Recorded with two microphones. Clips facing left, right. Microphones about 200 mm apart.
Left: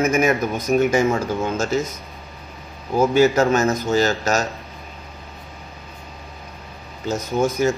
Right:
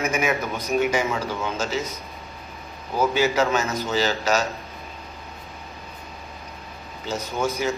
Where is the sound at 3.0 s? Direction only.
45° left (ahead or behind).